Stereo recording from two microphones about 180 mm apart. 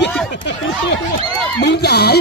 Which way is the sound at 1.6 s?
65° left (ahead or behind).